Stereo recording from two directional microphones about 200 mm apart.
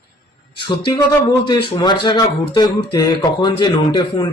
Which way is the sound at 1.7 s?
20° left (ahead or behind).